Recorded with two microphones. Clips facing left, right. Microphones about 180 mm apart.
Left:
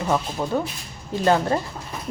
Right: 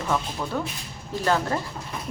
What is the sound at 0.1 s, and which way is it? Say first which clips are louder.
Speech: left 4 dB; 35° left (ahead or behind).